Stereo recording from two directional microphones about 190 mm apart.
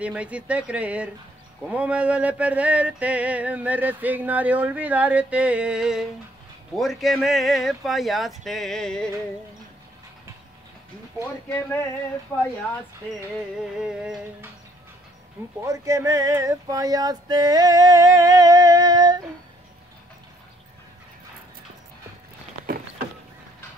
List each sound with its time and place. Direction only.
0.0 s a sound: 5° right (ahead or behind)
6.7 s speech: centre (ahead or behind)
13.8 s speech: 5° right (ahead or behind)
15.6 s male singing: 15° right (ahead or behind)